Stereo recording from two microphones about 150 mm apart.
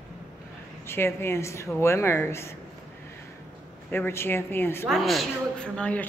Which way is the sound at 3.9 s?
15° left (ahead or behind).